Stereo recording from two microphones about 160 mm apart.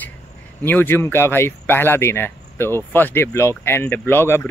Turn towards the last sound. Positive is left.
turn(degrees=15)  # may be behind; listen again after turning